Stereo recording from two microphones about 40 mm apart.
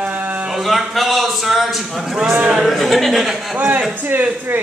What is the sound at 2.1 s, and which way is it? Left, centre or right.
Speech, centre.